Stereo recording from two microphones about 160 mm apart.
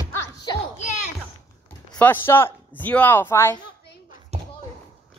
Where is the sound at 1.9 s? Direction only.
10° left (ahead or behind).